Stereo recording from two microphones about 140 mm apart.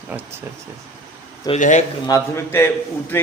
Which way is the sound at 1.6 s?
65° left (ahead or behind).